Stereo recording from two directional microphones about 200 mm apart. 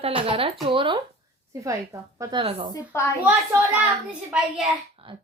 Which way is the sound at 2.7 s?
15° left (ahead or behind).